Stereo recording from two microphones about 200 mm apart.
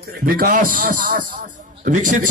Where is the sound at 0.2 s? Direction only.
45° right (ahead or behind).